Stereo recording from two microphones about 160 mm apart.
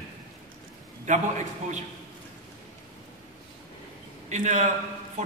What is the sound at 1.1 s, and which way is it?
Speech, 50° right (ahead or behind).